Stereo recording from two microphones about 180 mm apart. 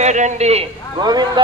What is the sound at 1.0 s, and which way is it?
Speech, 25° right (ahead or behind).